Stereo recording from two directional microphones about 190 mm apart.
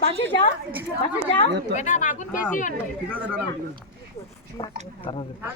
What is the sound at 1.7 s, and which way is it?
Speech, 40° left (ahead or behind).